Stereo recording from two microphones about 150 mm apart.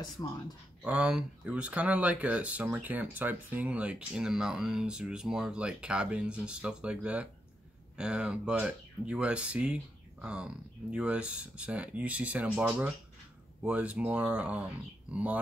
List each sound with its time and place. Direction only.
0.8 s speech: 5° right (ahead or behind)